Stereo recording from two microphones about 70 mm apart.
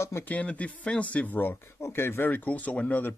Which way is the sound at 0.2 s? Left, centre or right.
Left.